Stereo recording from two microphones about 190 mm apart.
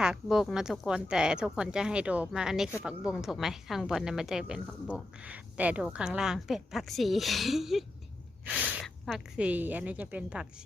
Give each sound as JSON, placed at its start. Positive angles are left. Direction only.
{"t": 0.0, "sound": "a woman's voice", "side_deg": -5}